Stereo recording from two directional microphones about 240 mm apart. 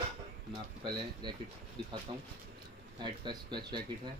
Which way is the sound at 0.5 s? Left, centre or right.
Centre.